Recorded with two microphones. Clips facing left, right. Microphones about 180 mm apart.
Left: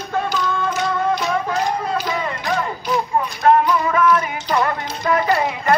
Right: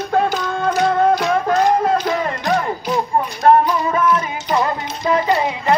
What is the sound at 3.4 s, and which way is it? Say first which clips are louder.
Music: right 2 dB; 30° right (ahead or behind).